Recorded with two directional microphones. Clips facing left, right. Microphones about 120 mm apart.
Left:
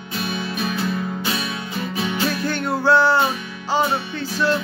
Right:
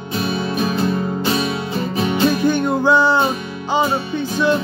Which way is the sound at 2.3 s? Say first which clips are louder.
Right 6 dB; 15° right (ahead or behind).